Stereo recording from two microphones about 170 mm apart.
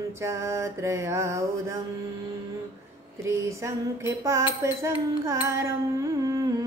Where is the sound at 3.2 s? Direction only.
15° right (ahead or behind).